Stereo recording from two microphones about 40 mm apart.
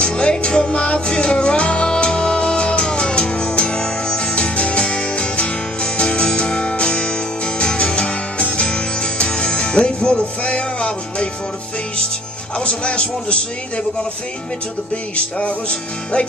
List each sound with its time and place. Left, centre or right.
0.0 s music: left
12.5 s music: left
15.1 s music: left